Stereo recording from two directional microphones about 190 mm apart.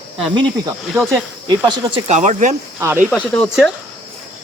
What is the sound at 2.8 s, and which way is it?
Speech, 15° right (ahead or behind).